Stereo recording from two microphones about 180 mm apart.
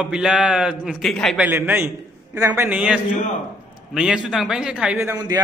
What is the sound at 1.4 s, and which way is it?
A man's voice, 10° right (ahead or behind).